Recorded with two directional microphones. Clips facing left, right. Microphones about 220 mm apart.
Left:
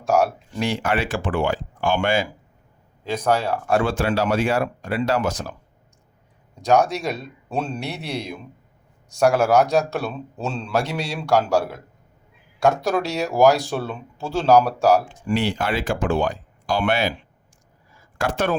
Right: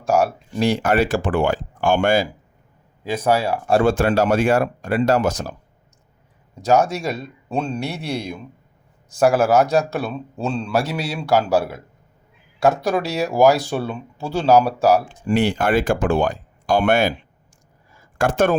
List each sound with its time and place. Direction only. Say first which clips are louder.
0.0 s speech: right 1 dB; centre (ahead or behind)
0.6 s speech: right 5 dB; 40° right (ahead or behind)
3.0 s speech: right 2 dB; 10° right (ahead or behind)
3.7 s speech: right 5 dB; 35° right (ahead or behind)
3.9 s speech: right 4 dB; 50° right (ahead or behind)
6.6 s a man's voice: right 1 dB; centre (ahead or behind)
15.3 s speech: right 5 dB; 50° right (ahead or behind)
18.2 s speech: right 5 dB; 50° right (ahead or behind)